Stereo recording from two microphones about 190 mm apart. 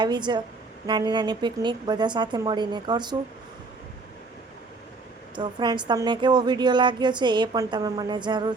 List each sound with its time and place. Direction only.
0.0 s speech: 25° right (ahead or behind)
5.3 s speech: 25° right (ahead or behind)